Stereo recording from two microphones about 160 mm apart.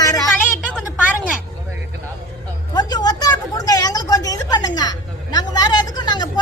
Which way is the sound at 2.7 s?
25° left (ahead or behind).